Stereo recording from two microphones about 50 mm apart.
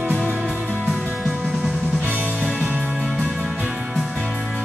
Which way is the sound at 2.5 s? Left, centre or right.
Right.